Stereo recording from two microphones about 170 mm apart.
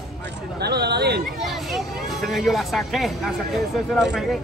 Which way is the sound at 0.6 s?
75° right (ahead or behind).